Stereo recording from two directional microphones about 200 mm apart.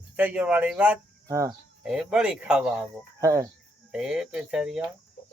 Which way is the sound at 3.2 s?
15° right (ahead or behind).